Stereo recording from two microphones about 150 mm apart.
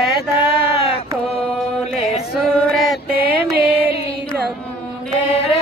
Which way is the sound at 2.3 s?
Centre (ahead or behind).